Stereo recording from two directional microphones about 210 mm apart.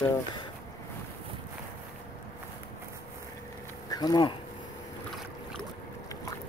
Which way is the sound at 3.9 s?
20° left (ahead or behind).